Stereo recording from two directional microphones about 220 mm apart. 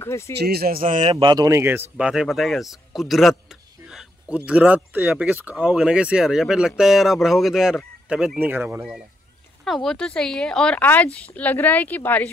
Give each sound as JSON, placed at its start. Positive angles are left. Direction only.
{"t": 0.0, "sound": "speech", "side_deg": 10}
{"t": 0.4, "sound": "speech", "side_deg": -45}
{"t": 1.1, "sound": "speech", "side_deg": -20}
{"t": 9.7, "sound": "speech", "side_deg": 0}